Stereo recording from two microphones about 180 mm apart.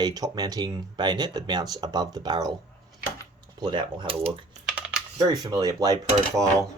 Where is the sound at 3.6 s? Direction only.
25° right (ahead or behind).